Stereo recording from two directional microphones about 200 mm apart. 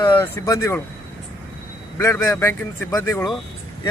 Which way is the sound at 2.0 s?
15° left (ahead or behind).